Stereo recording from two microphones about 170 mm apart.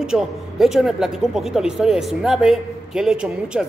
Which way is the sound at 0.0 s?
5° right (ahead or behind).